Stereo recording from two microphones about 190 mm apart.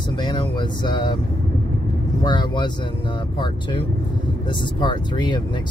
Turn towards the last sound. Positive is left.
turn(degrees=25)  # may be behind; listen again after turning